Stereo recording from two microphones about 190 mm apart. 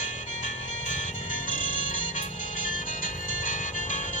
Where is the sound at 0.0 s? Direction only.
40° left (ahead or behind).